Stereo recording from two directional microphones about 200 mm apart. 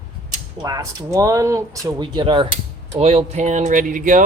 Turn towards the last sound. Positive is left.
turn(degrees=-40)  # may be behind; listen again after turning